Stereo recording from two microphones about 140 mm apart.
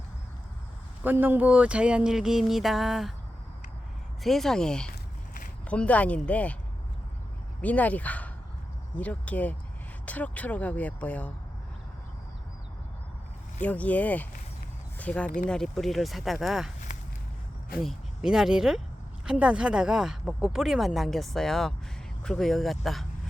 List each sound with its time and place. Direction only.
1.0 s speech: 15° right (ahead or behind)
4.2 s speech: centre (ahead or behind)
4.9 s a sound: 90° left
5.6 s speech: 10° left (ahead or behind)
7.6 s speech: 10° left (ahead or behind)
13.6 s speech: 10° left (ahead or behind)
17.7 s speech: 5° right (ahead or behind)